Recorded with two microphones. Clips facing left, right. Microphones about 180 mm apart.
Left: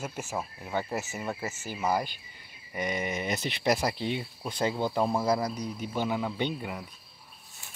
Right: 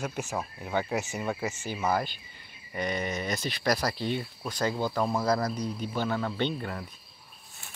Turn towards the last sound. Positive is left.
turn(degrees=10)  # may be behind; listen again after turning